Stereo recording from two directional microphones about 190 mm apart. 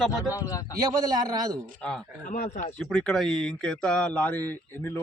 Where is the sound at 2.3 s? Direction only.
40° left (ahead or behind).